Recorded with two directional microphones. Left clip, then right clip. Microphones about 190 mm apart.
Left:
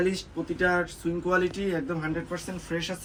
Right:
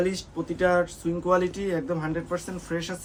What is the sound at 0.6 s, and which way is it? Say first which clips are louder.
Speech: right 3 dB; 5° right (ahead or behind).